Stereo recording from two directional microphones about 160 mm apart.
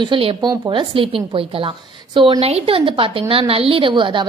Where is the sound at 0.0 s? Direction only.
35° right (ahead or behind).